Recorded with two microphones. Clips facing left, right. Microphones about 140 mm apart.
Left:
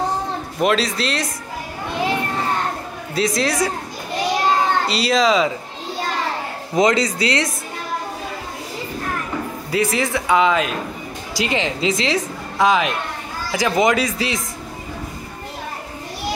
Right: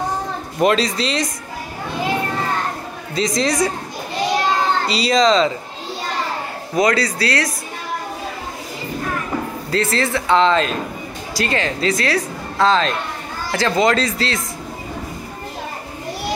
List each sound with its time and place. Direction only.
0.6 s speech: centre (ahead or behind)
3.2 s speech: 5° left (ahead or behind)
4.8 s speech: centre (ahead or behind)
6.7 s speech: 20° left (ahead or behind)
9.7 s speech: 15° left (ahead or behind)